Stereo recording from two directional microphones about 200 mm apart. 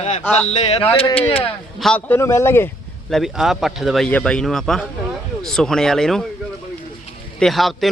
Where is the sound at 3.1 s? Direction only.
Centre (ahead or behind).